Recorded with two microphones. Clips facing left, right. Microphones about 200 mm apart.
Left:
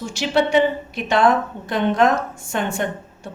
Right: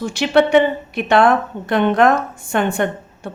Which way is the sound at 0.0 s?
60° right (ahead or behind).